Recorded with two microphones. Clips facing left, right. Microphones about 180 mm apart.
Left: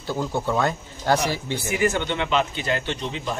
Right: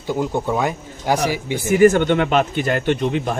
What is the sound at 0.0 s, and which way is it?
Speech, 15° right (ahead or behind).